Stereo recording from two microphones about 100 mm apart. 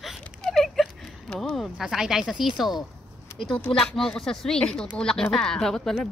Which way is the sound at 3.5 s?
10° left (ahead or behind).